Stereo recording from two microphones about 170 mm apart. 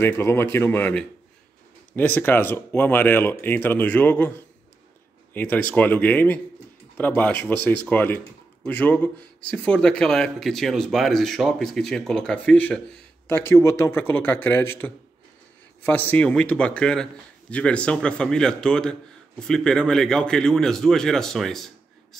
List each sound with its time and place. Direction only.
0.0 s speech: 15° left (ahead or behind)
5.3 s a man's voice: 10° left (ahead or behind)